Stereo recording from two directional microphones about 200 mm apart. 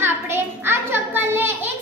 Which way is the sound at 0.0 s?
10° right (ahead or behind).